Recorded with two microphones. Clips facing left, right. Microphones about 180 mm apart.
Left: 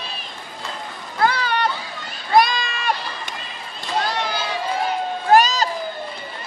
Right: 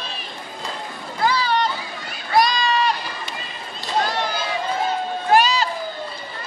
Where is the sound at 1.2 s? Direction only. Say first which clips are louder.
Even; 60° left (ahead or behind).